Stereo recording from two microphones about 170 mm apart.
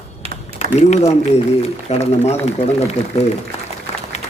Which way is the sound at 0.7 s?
40° left (ahead or behind).